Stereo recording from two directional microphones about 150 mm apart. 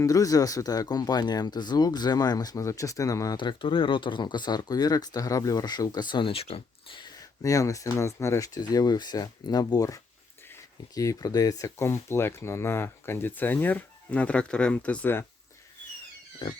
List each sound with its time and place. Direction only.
0.0 s speech: 25° left (ahead or behind)